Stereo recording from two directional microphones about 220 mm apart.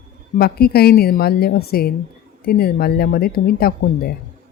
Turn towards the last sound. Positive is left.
turn(degrees=45)  # may be behind; listen again after turning